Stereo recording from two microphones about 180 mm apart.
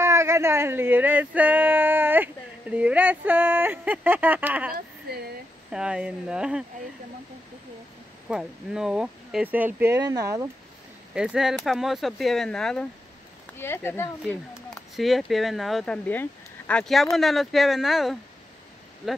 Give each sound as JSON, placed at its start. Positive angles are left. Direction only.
{"t": 0.0, "sound": "speech", "side_deg": -15}
{"t": 5.1, "sound": "a sound", "side_deg": -60}
{"t": 5.7, "sound": "speech", "side_deg": -5}
{"t": 8.3, "sound": "speech", "side_deg": -5}
{"t": 11.1, "sound": "speech", "side_deg": -5}
{"t": 14.2, "sound": "speech", "side_deg": 0}